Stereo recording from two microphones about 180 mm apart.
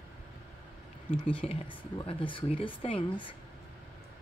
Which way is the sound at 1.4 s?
30° left (ahead or behind).